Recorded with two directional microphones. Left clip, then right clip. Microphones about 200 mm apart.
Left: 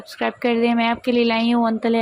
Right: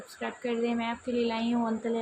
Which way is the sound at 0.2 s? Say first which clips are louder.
Left 12 dB; 40° left (ahead or behind).